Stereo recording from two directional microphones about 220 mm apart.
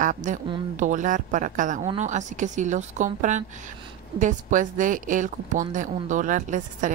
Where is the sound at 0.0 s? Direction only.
35° right (ahead or behind).